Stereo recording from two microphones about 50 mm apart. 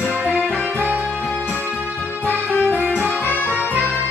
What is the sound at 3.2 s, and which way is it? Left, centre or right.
Music, left.